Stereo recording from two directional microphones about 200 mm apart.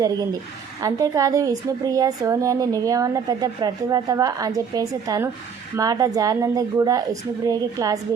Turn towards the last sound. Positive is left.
turn(degrees=-15)  # may be behind; listen again after turning